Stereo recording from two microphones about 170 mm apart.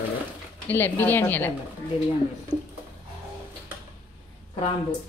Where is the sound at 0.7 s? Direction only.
10° left (ahead or behind).